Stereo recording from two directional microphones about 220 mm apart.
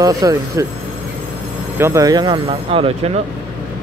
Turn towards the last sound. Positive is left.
turn(degrees=-25)  # may be behind; listen again after turning